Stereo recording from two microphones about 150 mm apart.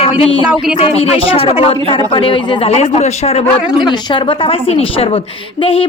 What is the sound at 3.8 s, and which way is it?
Speech, 30° left (ahead or behind).